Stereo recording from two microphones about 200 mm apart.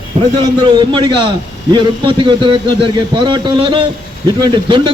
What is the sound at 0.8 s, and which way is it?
A man's voice, 25° right (ahead or behind).